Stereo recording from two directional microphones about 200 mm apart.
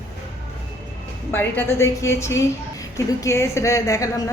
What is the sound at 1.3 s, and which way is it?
A woman's voice, 10° left (ahead or behind).